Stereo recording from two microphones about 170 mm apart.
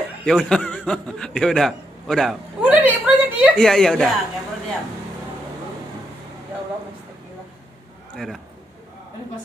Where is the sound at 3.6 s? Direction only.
5° left (ahead or behind).